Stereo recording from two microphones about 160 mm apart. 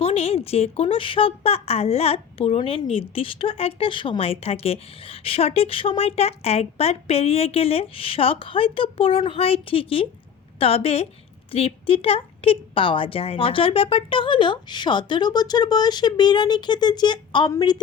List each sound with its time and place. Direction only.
0.0 s a woman's voice: 40° left (ahead or behind)